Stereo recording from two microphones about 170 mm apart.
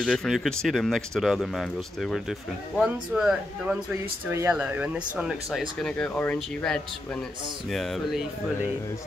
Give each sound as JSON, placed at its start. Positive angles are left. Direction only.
{"t": 0.0, "sound": "speech", "side_deg": 0}
{"t": 4.3, "sound": "speech", "side_deg": -15}